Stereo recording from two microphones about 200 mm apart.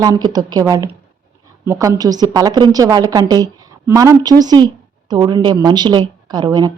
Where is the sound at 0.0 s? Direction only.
20° right (ahead or behind).